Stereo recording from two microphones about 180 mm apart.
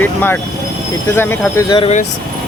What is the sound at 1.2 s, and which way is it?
Speech, 15° left (ahead or behind).